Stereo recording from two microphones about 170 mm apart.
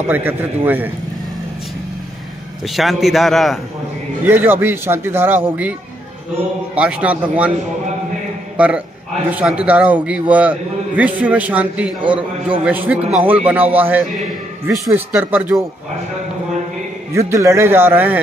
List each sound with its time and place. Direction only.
0.1 s a man's voice: 10° right (ahead or behind)
2.7 s a man's voice: centre (ahead or behind)
4.2 s a man's voice: 10° right (ahead or behind)
6.7 s a man's voice: 5° right (ahead or behind)
8.5 s a man's voice: 10° right (ahead or behind)
12.0 s a man's voice: 30° right (ahead or behind)
12.6 s a man's voice: 10° right (ahead or behind)
17.1 s a man's voice: 15° right (ahead or behind)